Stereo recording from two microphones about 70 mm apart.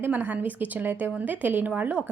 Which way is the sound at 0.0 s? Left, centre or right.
Right.